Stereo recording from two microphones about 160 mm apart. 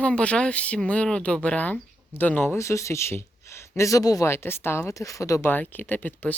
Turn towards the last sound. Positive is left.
turn(degrees=10)  # may be behind; listen again after turning